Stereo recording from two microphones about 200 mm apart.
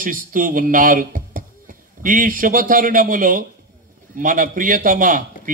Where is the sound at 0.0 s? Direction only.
40° right (ahead or behind).